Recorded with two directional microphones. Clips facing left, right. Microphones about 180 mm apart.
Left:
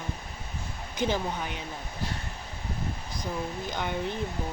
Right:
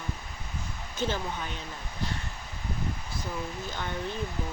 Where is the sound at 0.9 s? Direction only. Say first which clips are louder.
Left 3 dB; 15° left (ahead or behind).